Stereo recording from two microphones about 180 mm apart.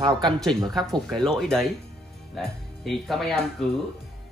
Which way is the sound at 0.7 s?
Centre (ahead or behind).